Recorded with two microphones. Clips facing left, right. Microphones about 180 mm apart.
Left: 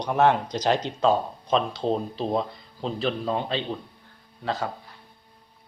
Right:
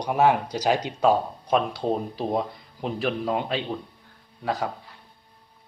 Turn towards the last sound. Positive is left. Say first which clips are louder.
# right 1 dB
turn(degrees=-15)  # may be behind; listen again after turning